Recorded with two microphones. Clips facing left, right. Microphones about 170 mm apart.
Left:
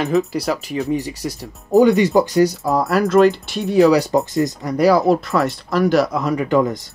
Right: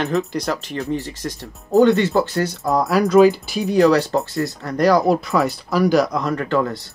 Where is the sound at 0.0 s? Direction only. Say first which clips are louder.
Left 3 dB; centre (ahead or behind).